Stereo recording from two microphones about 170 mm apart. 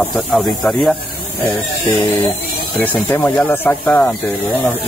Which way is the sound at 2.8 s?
10° left (ahead or behind).